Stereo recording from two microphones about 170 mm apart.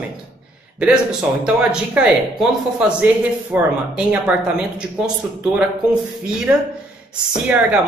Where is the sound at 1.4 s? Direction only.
5° right (ahead or behind).